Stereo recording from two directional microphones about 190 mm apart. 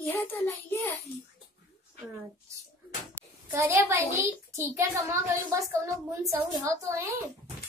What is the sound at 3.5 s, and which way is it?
A woman's voice, 15° right (ahead or behind).